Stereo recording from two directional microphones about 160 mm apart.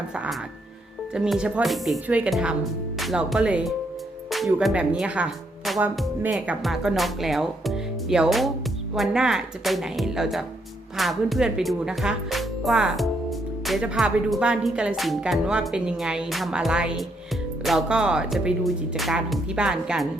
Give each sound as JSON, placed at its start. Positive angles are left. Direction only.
{"t": 1.1, "sound": "speech", "side_deg": -5}